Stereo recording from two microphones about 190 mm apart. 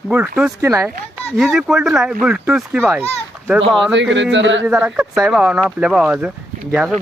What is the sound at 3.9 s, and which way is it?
Speech, 70° right (ahead or behind).